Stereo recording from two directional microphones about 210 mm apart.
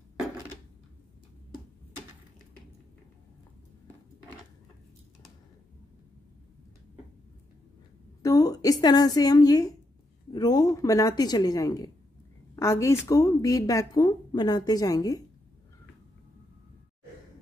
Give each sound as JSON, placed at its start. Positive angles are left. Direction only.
{"t": 8.2, "sound": "a woman's voice", "side_deg": 15}